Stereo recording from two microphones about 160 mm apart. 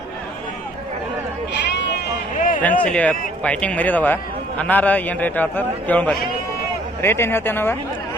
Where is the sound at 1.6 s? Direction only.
90° left.